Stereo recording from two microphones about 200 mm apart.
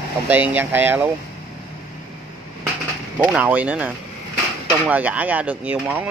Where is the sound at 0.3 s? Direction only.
5° right (ahead or behind).